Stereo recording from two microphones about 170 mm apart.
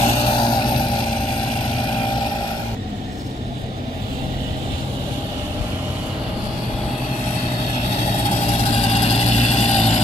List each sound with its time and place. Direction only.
0.0 s vehicle: 30° left (ahead or behind)
8.4 s vehicle: 35° left (ahead or behind)